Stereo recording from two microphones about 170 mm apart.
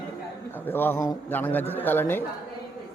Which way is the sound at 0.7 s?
10° left (ahead or behind).